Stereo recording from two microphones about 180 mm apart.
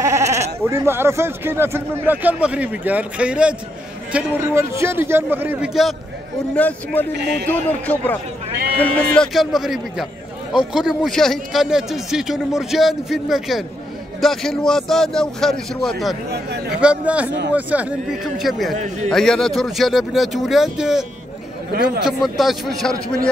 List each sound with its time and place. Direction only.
0.0 s a man's voice: 15° right (ahead or behind); by 16.2 s centre (ahead or behind)
16.3 s speech: 65° right (ahead or behind)
16.7 s a man's voice: 5° right (ahead or behind)
22.0 s a man's voice: centre (ahead or behind)